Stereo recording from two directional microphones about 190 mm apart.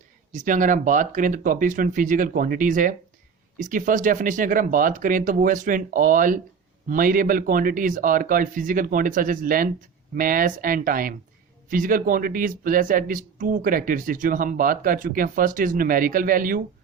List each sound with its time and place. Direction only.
0.3 s speech: 45° right (ahead or behind)